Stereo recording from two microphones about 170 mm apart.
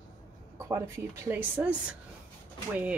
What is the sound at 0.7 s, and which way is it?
Speech, 15° right (ahead or behind).